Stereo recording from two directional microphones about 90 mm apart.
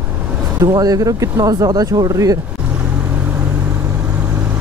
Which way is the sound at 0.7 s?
45° right (ahead or behind).